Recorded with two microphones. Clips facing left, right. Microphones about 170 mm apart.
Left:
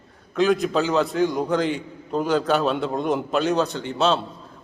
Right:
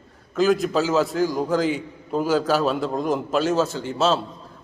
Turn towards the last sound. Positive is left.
turn(degrees=0)  # may be behind; listen again after turning